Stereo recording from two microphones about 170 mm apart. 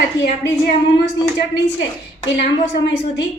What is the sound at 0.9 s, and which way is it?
Speech, 90° left.